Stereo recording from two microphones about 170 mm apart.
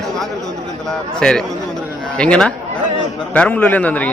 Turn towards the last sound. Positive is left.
turn(degrees=10)  # may be behind; listen again after turning